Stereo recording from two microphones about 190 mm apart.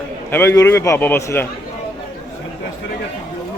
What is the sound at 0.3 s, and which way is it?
A man's voice, 10° left (ahead or behind).